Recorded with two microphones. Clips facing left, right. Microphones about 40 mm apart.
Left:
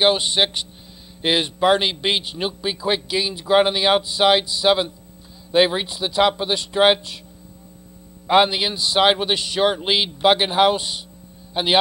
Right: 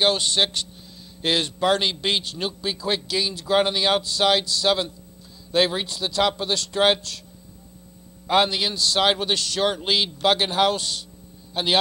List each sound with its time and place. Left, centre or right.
0.0 s a man's voice: centre
8.3 s a man's voice: centre